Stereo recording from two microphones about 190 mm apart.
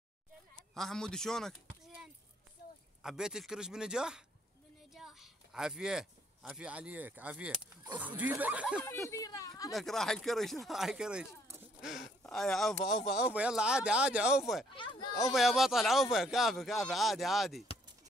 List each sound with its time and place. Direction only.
0.7 s speech: 5° left (ahead or behind)
3.0 s speech: 5° right (ahead or behind)
9.1 s speech: 20° left (ahead or behind)
9.7 s speech: centre (ahead or behind)